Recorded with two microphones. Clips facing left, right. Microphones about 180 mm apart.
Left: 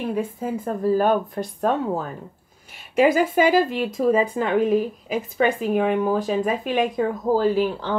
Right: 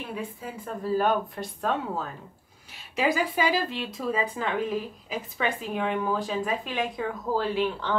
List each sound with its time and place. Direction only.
0.1 s speech: 45° left (ahead or behind)